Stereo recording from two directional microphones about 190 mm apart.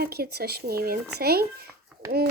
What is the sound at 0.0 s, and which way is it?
A child's voice, 55° right (ahead or behind).